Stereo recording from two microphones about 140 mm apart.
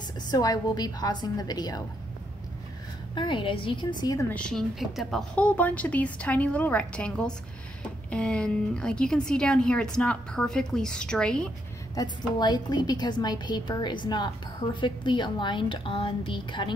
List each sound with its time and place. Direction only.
0.3 s a woman's voice: 30° left (ahead or behind)
3.2 s a woman's voice: 35° left (ahead or behind)
4.3 s a woman's voice: 5° left (ahead or behind)
11.9 s a woman's voice: 30° left (ahead or behind)